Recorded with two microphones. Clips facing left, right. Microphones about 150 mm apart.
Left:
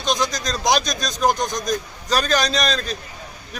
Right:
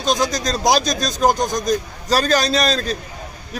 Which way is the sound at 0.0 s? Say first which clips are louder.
Right 3 dB; 35° right (ahead or behind).